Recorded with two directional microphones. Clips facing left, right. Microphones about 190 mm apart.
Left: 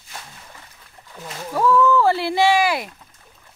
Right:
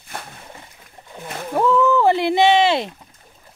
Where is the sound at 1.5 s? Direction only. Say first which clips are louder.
Even; 20° right (ahead or behind).